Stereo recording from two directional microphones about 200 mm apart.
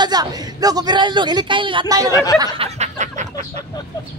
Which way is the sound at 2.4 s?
30° right (ahead or behind).